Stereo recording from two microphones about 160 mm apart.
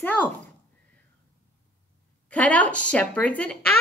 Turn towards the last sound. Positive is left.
turn(degrees=10)  # may be behind; listen again after turning